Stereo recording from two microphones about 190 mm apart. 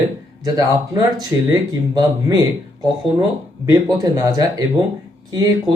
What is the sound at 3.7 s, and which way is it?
Speech, 20° right (ahead or behind).